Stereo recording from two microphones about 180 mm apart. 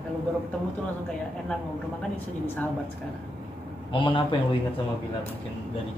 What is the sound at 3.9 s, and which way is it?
Speech, 30° left (ahead or behind).